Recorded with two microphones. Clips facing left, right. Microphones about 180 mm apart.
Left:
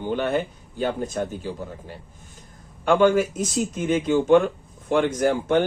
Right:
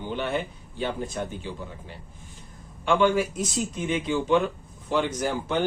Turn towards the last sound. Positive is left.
turn(degrees=50)  # may be behind; listen again after turning